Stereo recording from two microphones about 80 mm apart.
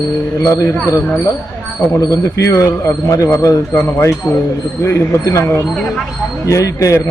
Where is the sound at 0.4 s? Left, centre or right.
Left.